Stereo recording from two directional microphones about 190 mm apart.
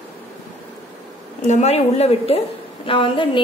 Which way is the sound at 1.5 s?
35° left (ahead or behind).